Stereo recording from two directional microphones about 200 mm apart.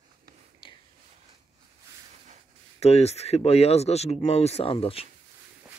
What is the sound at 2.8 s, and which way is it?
Speech, 30° left (ahead or behind).